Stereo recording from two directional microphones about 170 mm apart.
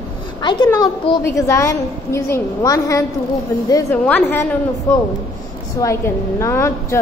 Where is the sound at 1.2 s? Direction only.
15° left (ahead or behind).